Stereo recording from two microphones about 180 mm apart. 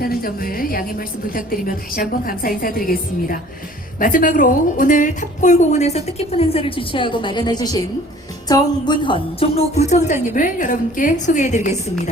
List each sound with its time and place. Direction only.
0.0 s a woman's voice: 55° left (ahead or behind)